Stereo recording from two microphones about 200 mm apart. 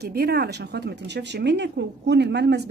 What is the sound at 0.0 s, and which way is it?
Speech, 55° right (ahead or behind).